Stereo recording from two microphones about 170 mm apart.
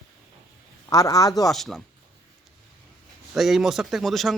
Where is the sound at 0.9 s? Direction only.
20° left (ahead or behind).